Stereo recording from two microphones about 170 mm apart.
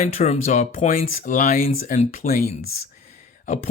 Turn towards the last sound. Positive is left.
turn(degrees=45)  # may be behind; listen again after turning